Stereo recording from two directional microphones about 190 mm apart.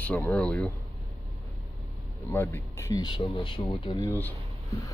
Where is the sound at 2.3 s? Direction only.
10° left (ahead or behind).